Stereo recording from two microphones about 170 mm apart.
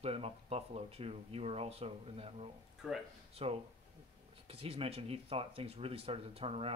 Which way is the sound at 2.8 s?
Centre (ahead or behind).